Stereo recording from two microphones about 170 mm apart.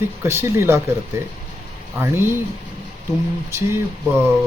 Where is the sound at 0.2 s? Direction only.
15° right (ahead or behind).